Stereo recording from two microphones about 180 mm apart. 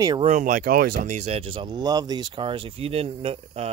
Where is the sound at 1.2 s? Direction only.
35° right (ahead or behind).